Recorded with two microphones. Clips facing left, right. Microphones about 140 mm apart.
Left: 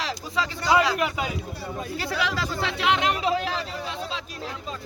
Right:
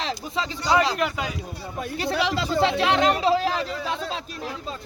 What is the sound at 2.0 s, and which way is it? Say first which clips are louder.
Speech: right 4 dB; 25° right (ahead or behind).